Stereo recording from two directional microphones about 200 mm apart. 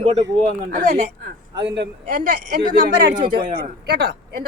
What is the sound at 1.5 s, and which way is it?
A woman's voice, 60° right (ahead or behind).